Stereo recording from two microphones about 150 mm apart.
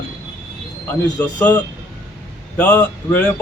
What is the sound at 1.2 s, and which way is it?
Speech, 10° left (ahead or behind).